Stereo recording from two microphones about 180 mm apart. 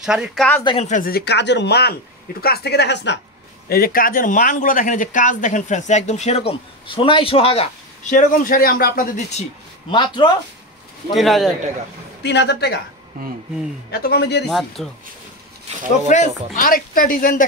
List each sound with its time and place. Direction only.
0.0 s speech: 5° right (ahead or behind)
0.7 s speech: 35° left (ahead or behind); by 3.2 s 75° left (ahead or behind)
3.6 s speech: 55° left (ahead or behind)
9.8 s speech: 25° left (ahead or behind)
11.1 s speech: centre (ahead or behind)
12.2 s speech: 75° left (ahead or behind)
14.0 s speech: 65° left (ahead or behind)
14.5 s speech: centre (ahead or behind)
16.1 s speech: 45° left (ahead or behind)